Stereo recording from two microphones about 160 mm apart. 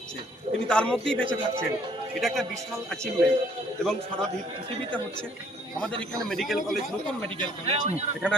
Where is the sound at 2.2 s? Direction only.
Centre (ahead or behind).